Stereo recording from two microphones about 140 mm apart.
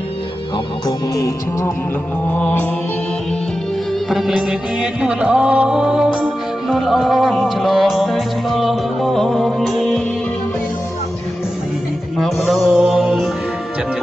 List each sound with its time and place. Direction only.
0.8 s music: 25° left (ahead or behind)
2.2 s mantra: 10° left (ahead or behind)
4.1 s music: 5° right (ahead or behind)
12.2 s mantra: centre (ahead or behind)